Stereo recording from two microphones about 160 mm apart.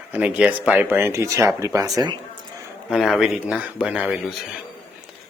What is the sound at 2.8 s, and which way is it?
A man's voice, centre (ahead or behind).